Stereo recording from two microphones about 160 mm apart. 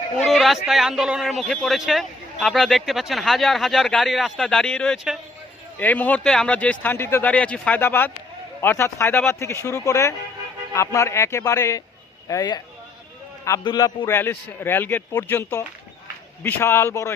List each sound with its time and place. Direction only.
0.2 s a man's voice: centre (ahead or behind); by 12.6 s 25° left (ahead or behind)
13.7 s speech: 25° left (ahead or behind)